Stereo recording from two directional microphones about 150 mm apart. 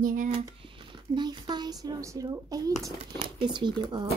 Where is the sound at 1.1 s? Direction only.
30° right (ahead or behind).